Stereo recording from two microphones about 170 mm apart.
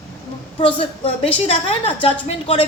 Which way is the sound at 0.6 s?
35° left (ahead or behind).